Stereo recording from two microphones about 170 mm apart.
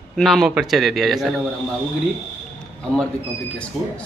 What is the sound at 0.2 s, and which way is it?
Speech, centre (ahead or behind).